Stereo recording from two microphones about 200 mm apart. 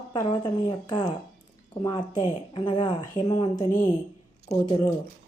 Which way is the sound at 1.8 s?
20° left (ahead or behind).